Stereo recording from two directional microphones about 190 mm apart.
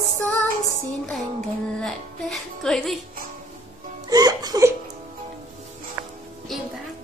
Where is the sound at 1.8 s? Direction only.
5° left (ahead or behind).